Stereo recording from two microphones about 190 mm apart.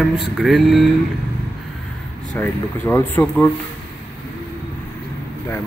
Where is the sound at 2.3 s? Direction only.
10° left (ahead or behind).